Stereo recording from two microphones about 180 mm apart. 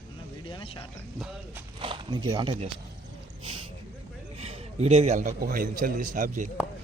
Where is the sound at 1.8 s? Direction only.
25° right (ahead or behind).